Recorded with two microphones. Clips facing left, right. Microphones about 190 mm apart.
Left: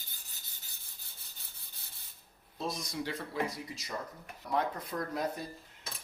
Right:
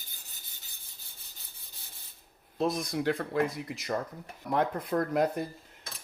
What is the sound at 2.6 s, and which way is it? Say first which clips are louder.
Speech: right 8 dB; 55° right (ahead or behind).